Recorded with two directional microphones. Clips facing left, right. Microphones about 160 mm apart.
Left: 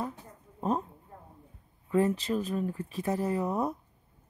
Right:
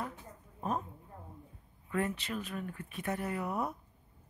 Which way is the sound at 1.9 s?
30° left (ahead or behind).